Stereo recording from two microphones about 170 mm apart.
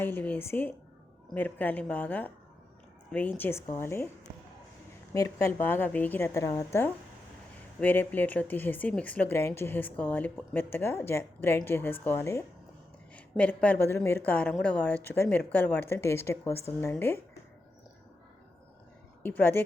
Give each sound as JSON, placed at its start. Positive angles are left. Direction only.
{"t": 0.0, "sound": "speech", "side_deg": 10}
{"t": 5.1, "sound": "speech", "side_deg": 20}
{"t": 19.2, "sound": "speech", "side_deg": 10}